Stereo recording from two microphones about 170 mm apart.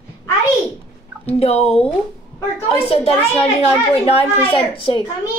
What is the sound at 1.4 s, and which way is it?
A woman's voice, 35° left (ahead or behind).